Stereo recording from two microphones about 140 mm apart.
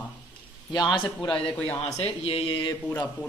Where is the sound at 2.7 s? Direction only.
15° left (ahead or behind).